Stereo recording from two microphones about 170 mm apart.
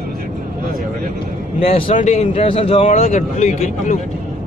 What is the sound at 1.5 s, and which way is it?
Speech, 35° left (ahead or behind).